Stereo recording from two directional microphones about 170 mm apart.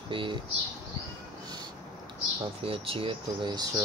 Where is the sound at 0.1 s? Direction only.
30° right (ahead or behind).